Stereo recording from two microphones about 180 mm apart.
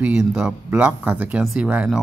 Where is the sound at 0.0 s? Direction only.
5° right (ahead or behind).